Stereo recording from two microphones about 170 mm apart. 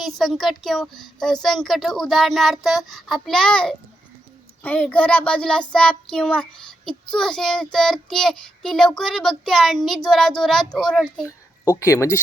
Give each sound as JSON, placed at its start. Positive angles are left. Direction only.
{"t": 0.0, "sound": "child singing", "side_deg": 0}
{"t": 11.7, "sound": "speech", "side_deg": 15}